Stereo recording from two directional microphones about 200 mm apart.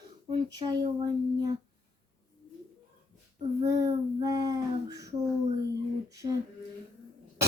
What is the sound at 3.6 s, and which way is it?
Child singing, 20° right (ahead or behind).